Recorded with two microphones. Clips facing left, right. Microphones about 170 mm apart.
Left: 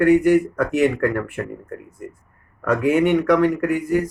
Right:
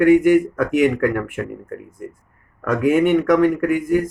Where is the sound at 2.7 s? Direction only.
50° right (ahead or behind).